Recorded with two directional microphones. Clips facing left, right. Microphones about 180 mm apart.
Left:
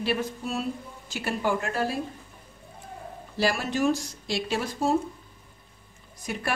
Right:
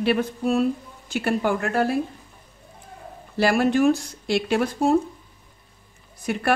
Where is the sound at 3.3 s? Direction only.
60° right (ahead or behind).